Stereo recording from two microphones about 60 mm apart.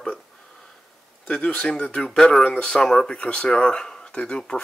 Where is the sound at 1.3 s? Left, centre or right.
Left.